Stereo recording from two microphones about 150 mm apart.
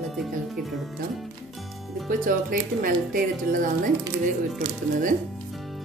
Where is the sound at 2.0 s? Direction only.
65° right (ahead or behind).